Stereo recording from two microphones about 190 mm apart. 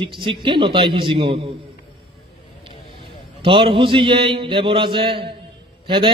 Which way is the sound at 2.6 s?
25° right (ahead or behind).